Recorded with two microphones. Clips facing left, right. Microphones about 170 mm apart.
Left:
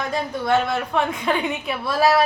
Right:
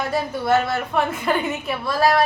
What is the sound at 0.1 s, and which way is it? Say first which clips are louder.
A woman's voice: right 1 dB; 5° right (ahead or behind).